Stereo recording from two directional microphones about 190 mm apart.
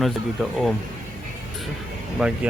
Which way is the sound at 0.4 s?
Centre (ahead or behind).